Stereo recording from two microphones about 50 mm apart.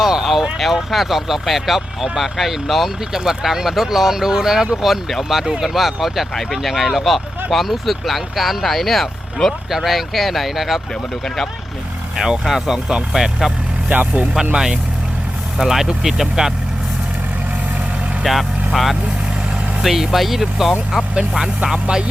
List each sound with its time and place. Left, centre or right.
0.0 s a sound: centre
0.6 s speech: centre
12.1 s speech: centre
13.9 s speech: right
14.5 s speech: centre
18.2 s speech: centre